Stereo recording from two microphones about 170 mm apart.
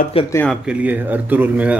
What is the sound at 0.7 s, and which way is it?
Speech, 10° right (ahead or behind).